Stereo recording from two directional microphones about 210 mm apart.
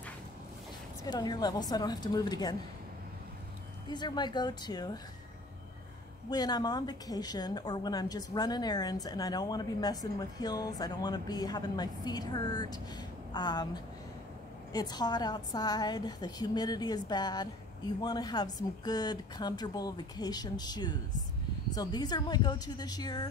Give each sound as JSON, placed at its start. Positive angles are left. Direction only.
{"t": 1.0, "sound": "a woman's voice", "side_deg": 20}
{"t": 3.9, "sound": "a woman's voice", "side_deg": 20}
{"t": 6.3, "sound": "a woman's voice", "side_deg": 20}
{"t": 14.7, "sound": "a woman's voice", "side_deg": 20}